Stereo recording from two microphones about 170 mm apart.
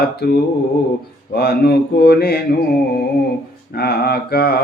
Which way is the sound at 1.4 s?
65° left (ahead or behind).